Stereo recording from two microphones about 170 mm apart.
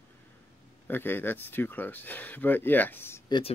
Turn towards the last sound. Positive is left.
turn(degrees=15)  # may be behind; listen again after turning